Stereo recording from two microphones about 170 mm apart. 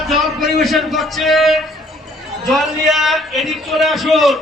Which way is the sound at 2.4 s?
Centre (ahead or behind).